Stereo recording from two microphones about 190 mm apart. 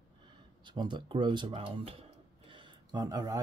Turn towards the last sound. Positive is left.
turn(degrees=-20)  # may be behind; listen again after turning